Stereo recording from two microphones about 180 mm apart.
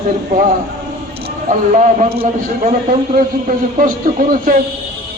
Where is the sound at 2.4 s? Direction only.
50° right (ahead or behind).